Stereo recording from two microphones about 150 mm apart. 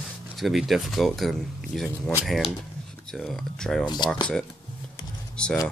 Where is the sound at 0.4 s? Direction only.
Centre (ahead or behind).